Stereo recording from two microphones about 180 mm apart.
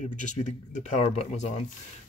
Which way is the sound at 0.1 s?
45° left (ahead or behind).